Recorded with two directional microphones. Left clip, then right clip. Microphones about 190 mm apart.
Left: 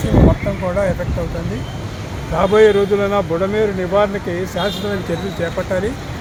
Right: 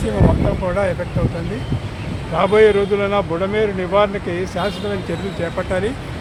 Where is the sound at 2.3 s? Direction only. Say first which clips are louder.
Left 1 dB; 25° left (ahead or behind).